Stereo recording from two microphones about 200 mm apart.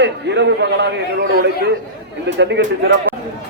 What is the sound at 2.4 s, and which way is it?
Speech, 60° right (ahead or behind).